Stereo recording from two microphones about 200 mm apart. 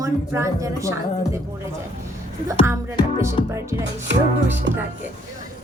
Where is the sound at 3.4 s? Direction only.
30° left (ahead or behind).